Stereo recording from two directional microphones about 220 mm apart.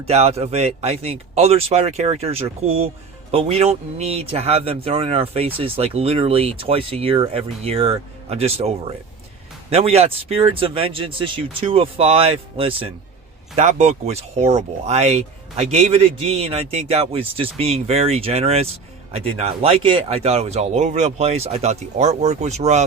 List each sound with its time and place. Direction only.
0.0 s speech: 30° right (ahead or behind)